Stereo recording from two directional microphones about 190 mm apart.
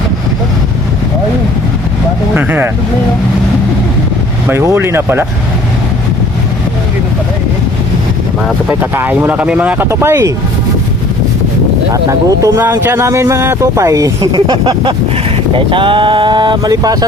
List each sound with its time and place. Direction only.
2.3 s speech: 10° right (ahead or behind)
4.4 s speech: 15° right (ahead or behind)
8.4 s speech: 10° right (ahead or behind)
12.0 s speech: 15° right (ahead or behind)